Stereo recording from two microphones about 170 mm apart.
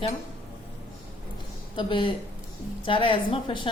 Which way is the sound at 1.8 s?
30° left (ahead or behind).